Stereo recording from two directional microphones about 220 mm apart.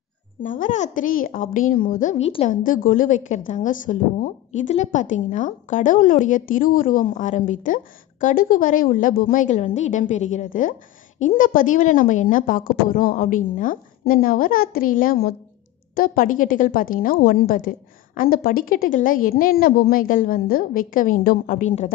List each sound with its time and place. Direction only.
0.4 s a woman's voice: 35° left (ahead or behind)